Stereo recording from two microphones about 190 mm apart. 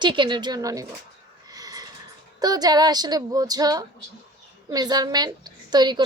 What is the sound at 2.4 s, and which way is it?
A woman's voice, 20° right (ahead or behind).